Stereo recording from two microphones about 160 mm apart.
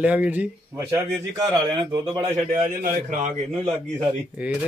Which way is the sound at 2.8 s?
45° right (ahead or behind).